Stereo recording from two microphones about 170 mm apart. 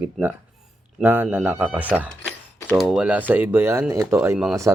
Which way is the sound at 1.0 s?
10° right (ahead or behind).